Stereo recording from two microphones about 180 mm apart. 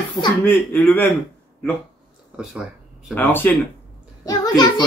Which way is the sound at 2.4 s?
Centre (ahead or behind).